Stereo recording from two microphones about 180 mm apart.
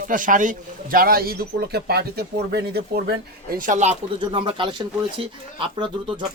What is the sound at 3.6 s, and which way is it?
Speech, 45° right (ahead or behind).